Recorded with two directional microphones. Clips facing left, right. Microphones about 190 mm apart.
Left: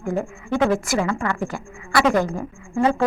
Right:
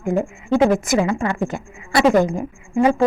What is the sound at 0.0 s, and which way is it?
A woman's voice, 20° right (ahead or behind).